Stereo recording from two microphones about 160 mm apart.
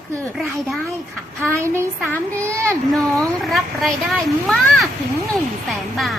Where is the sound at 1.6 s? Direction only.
15° right (ahead or behind).